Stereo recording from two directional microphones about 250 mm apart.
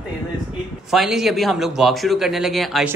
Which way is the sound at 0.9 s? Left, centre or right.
Centre.